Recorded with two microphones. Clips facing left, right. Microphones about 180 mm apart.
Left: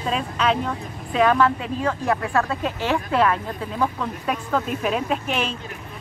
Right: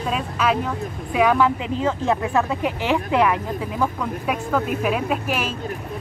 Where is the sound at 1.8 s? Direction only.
20° right (ahead or behind).